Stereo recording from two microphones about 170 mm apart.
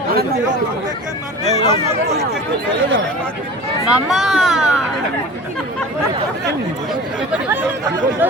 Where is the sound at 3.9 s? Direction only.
Centre (ahead or behind).